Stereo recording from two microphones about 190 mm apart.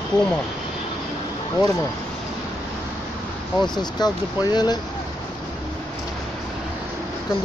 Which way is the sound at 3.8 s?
20° left (ahead or behind).